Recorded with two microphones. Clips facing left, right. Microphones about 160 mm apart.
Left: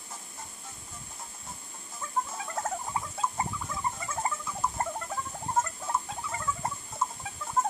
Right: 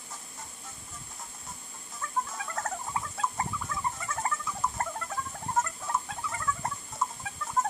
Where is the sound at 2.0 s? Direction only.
20° left (ahead or behind).